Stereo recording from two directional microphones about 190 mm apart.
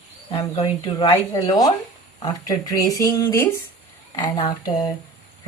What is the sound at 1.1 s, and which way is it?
Speech, 15° left (ahead or behind).